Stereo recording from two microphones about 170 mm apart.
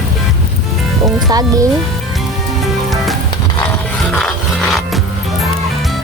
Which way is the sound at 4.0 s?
Centre (ahead or behind).